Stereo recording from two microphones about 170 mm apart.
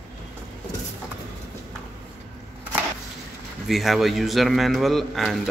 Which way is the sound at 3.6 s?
Centre (ahead or behind).